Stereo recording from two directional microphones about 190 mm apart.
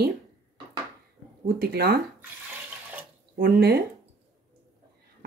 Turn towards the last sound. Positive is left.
turn(degrees=-55)  # may be behind; listen again after turning